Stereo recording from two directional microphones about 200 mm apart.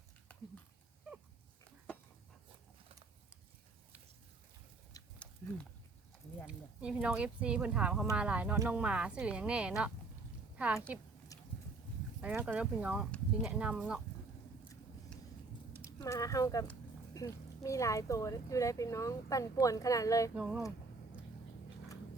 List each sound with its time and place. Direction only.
0.3 s a sound: 5° left (ahead or behind)
6.5 s a woman's voice: 5° right (ahead or behind)
11.3 s a sound: 15° left (ahead or behind)
12.2 s speech: 10° right (ahead or behind)
15.9 s speech: 20° left (ahead or behind)
20.3 s speech: 5° right (ahead or behind)